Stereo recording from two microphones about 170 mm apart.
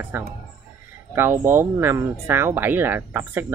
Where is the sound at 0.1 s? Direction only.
15° right (ahead or behind).